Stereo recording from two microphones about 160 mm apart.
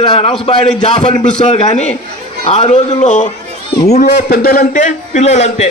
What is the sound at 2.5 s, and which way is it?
Speech, 45° left (ahead or behind).